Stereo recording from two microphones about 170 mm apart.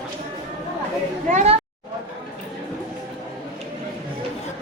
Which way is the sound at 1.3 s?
40° right (ahead or behind).